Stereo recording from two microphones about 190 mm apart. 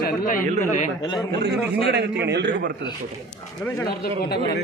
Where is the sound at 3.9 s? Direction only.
55° left (ahead or behind).